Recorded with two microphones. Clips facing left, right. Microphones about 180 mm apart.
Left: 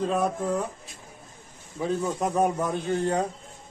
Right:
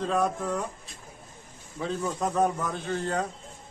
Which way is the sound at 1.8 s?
10° left (ahead or behind).